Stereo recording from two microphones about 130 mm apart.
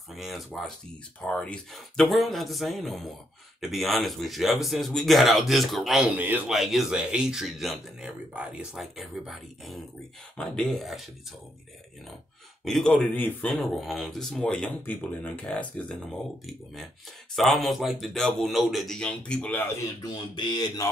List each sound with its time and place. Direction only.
0.1 s speech: centre (ahead or behind)
6.1 s a man's voice: 15° right (ahead or behind)
6.5 s speech: centre (ahead or behind)
12.6 s speech: 5° left (ahead or behind)
17.4 s speech: centre (ahead or behind)
20.3 s speech: 35° left (ahead or behind)